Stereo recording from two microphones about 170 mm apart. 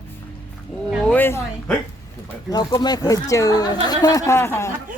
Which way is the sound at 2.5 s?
25° left (ahead or behind).